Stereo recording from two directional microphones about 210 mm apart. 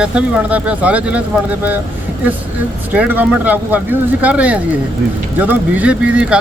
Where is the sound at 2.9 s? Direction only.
10° right (ahead or behind).